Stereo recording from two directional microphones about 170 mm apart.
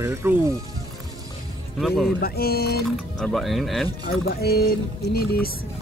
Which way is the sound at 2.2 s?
65° left (ahead or behind).